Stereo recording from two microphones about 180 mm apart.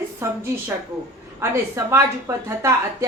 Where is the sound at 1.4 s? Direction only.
15° right (ahead or behind).